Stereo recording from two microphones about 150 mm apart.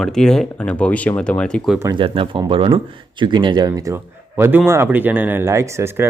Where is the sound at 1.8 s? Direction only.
25° right (ahead or behind).